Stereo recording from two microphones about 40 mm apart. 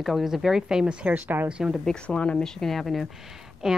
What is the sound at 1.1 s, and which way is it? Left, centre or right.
Speech, right.